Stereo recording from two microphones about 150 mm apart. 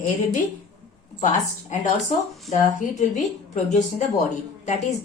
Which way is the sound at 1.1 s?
50° left (ahead or behind).